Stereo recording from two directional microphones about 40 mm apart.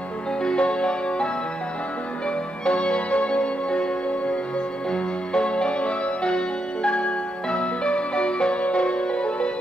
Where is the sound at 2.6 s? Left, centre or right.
Left.